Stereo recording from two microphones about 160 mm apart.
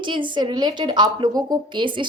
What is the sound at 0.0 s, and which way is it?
A woman's voice, 30° right (ahead or behind).